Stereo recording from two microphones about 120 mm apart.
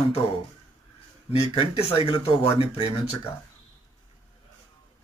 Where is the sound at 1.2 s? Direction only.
50° left (ahead or behind).